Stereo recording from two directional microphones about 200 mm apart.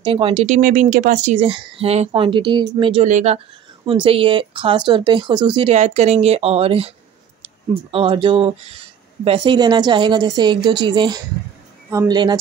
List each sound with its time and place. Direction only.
0.0 s speech: 25° right (ahead or behind)
0.6 s speech: 40° right (ahead or behind); by 3.1 s 25° right (ahead or behind)
3.1 s speech: 35° right (ahead or behind)
7.9 s speech: 25° right (ahead or behind)